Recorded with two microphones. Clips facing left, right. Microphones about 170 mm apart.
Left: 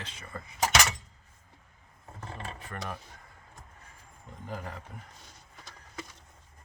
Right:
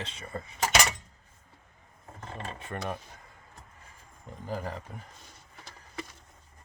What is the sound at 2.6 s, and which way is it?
Speech, 25° right (ahead or behind).